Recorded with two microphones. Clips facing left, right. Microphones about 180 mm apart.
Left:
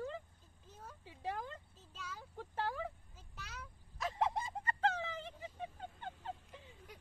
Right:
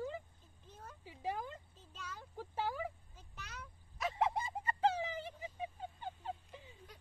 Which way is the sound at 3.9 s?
5° right (ahead or behind).